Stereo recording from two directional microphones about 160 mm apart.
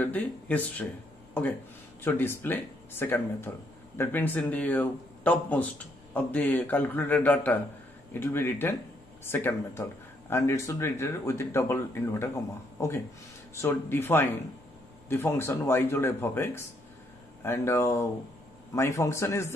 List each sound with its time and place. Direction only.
0.0 s speech: 10° left (ahead or behind)
2.0 s speech: 15° left (ahead or behind)